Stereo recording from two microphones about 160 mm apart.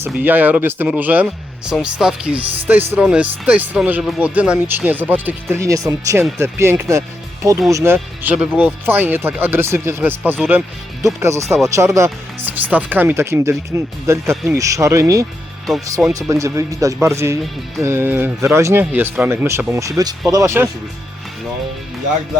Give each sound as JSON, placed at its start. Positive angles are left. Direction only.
{"t": 0.0, "sound": "speech", "side_deg": -10}
{"t": 7.9, "sound": "speech", "side_deg": -10}
{"t": 15.6, "sound": "speech", "side_deg": 0}
{"t": 16.3, "sound": "speech", "side_deg": -20}